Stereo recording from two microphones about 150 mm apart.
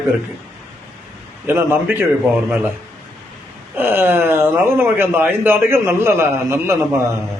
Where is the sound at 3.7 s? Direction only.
15° right (ahead or behind).